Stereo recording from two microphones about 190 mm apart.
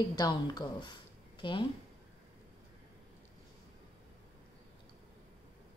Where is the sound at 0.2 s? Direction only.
20° left (ahead or behind).